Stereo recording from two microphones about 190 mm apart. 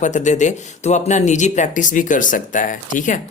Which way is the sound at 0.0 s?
40° left (ahead or behind).